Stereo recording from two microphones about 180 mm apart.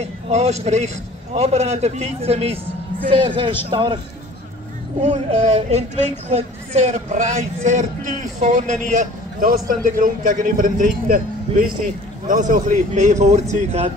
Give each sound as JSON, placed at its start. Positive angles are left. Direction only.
{"t": 0.0, "sound": "a man's voice", "side_deg": -35}
{"t": 5.0, "sound": "a man's voice", "side_deg": -30}